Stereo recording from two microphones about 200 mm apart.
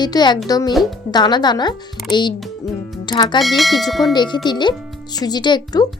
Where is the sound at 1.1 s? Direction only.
20° left (ahead or behind).